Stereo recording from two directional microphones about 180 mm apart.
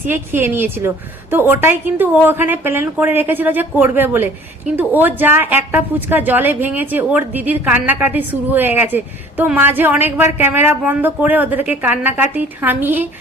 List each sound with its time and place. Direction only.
0.0 s a woman's voice: 10° right (ahead or behind)